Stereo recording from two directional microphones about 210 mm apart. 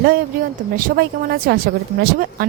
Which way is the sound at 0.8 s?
45° right (ahead or behind).